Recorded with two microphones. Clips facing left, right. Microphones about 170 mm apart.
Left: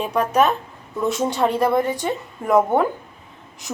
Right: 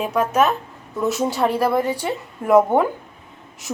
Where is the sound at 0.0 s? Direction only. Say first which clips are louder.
Even; 5° right (ahead or behind).